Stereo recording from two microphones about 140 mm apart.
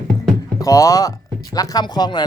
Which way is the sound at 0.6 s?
25° left (ahead or behind).